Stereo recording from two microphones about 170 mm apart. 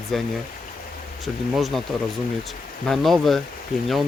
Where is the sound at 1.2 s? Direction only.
Centre (ahead or behind).